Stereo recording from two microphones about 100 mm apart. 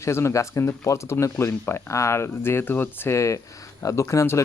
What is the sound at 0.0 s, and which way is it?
Speech, 30° left (ahead or behind).